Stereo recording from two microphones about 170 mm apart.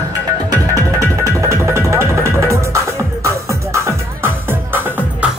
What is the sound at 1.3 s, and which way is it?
Music, 15° right (ahead or behind).